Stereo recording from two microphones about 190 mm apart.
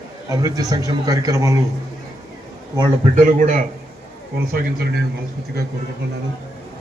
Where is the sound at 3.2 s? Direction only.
45° right (ahead or behind).